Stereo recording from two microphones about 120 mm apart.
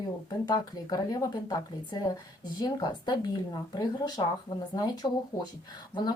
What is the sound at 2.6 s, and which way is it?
Speech, 35° left (ahead or behind).